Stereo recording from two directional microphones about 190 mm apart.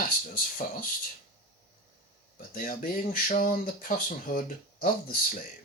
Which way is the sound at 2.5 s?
45° left (ahead or behind).